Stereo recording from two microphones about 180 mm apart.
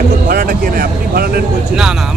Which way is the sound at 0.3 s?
55° right (ahead or behind).